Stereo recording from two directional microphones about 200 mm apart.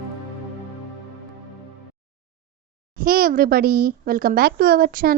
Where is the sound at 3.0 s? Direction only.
45° right (ahead or behind).